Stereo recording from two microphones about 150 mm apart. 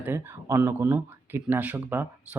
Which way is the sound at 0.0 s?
15° right (ahead or behind).